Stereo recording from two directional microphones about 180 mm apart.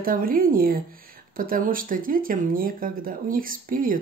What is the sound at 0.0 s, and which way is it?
Speech, 50° right (ahead or behind).